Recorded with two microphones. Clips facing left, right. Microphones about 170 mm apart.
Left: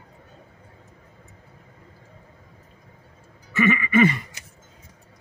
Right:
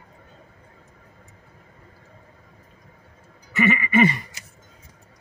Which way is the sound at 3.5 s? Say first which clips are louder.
Even; 20° right (ahead or behind).